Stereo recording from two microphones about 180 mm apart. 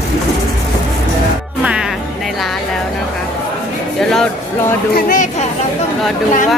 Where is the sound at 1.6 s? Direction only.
5° right (ahead or behind).